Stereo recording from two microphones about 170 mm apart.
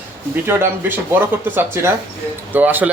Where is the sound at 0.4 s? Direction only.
10° right (ahead or behind).